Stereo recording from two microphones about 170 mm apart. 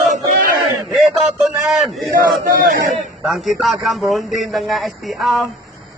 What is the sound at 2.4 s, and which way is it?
Speech, 50° right (ahead or behind).